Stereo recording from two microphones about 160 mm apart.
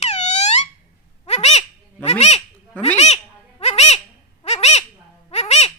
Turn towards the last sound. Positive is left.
turn(degrees=45)  # may be behind; listen again after turning